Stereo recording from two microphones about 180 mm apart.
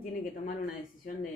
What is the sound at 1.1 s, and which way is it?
Speech, 45° left (ahead or behind).